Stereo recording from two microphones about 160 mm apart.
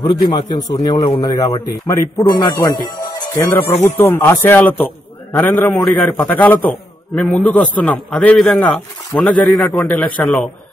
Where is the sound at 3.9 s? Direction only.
15° left (ahead or behind).